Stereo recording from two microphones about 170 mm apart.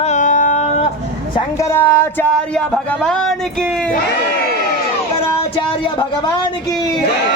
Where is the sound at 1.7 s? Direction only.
10° left (ahead or behind).